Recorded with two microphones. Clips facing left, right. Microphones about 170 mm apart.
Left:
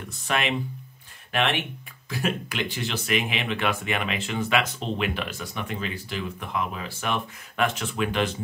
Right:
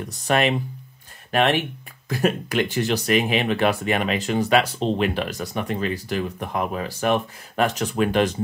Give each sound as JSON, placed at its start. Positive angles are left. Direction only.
{"t": 0.3, "sound": "speech", "side_deg": -40}